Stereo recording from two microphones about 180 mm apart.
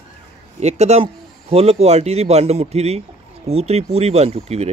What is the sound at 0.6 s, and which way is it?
Speech, 35° right (ahead or behind).